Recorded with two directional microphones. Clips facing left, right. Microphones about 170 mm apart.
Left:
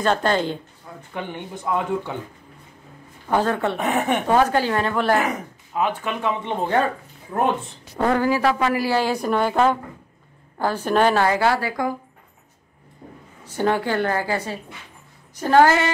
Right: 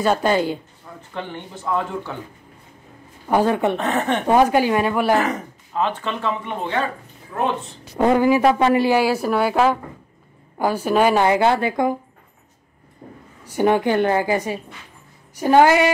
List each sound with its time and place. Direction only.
0.0 s a woman's voice: 10° right (ahead or behind)
1.1 s speech: 15° left (ahead or behind)
3.3 s a woman's voice: 15° right (ahead or behind)
3.7 s speech: 10° left (ahead or behind)
4.3 s a woman's voice: 15° right (ahead or behind)
5.8 s speech: 10° left (ahead or behind)
7.3 s speech: 40° left (ahead or behind)
8.0 s speech: 15° right (ahead or behind)
8.9 s a woman's voice: 5° right (ahead or behind)
11.2 s speech: 20° right (ahead or behind)
13.5 s a woman's voice: 15° right (ahead or behind)